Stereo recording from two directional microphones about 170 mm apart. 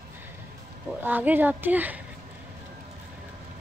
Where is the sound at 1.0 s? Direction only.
10° right (ahead or behind).